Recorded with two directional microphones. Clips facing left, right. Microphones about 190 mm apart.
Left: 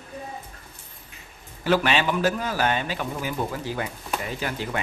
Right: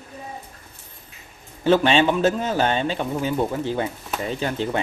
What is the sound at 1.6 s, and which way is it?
A man's voice, 25° right (ahead or behind).